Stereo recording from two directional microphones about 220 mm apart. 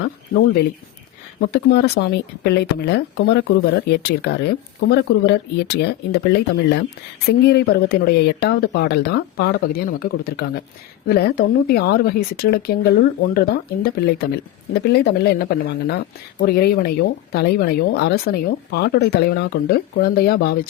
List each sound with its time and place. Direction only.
1.4 s speech: 50° left (ahead or behind)